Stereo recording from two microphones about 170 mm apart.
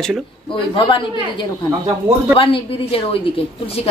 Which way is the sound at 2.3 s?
30° left (ahead or behind).